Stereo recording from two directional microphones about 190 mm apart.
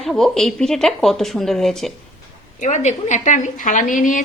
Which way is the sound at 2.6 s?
40° left (ahead or behind).